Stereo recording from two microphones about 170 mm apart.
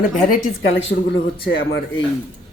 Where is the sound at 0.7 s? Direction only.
90° left.